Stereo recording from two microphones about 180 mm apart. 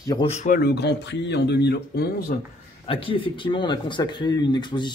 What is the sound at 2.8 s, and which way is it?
Speech, 30° left (ahead or behind).